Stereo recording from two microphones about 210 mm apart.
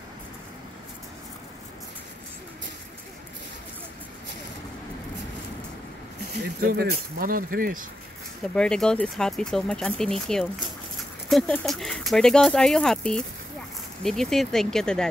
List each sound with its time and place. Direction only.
6.6 s speech: 45° right (ahead or behind)
8.5 s speech: 5° left (ahead or behind)